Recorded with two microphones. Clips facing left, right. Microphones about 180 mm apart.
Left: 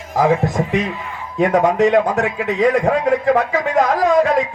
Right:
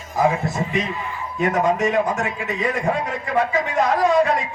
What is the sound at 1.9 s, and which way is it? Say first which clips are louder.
Speech: left 5 dB; 75° left (ahead or behind).